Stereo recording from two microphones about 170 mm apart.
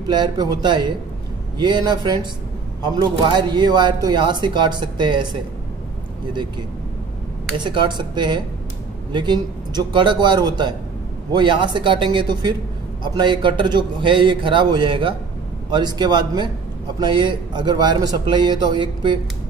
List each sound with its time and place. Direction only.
0.1 s speech: 25° right (ahead or behind)
7.5 s speech: 25° right (ahead or behind)